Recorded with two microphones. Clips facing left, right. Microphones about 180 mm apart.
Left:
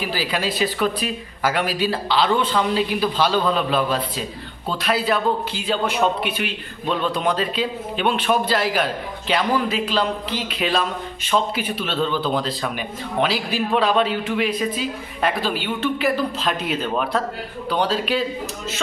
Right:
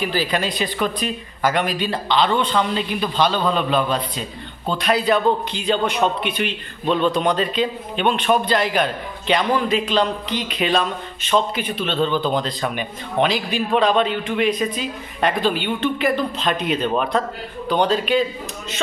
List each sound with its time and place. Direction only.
0.0 s a man's voice: 5° left (ahead or behind)